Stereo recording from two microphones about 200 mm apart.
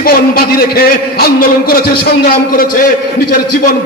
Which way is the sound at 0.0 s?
50° left (ahead or behind).